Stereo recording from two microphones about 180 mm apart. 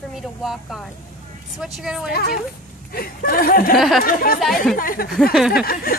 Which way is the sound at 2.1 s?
60° left (ahead or behind).